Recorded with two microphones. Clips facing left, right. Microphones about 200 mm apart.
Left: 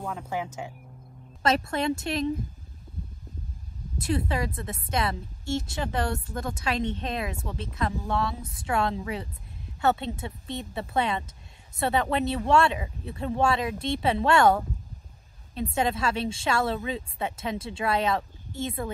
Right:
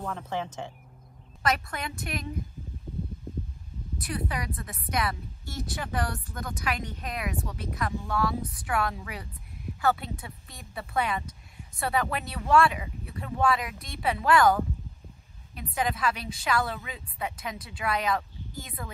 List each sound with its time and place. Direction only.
0.0 s speech: 10° left (ahead or behind)
1.4 s a woman's voice: 25° left (ahead or behind)
4.0 s a woman's voice: 25° left (ahead or behind)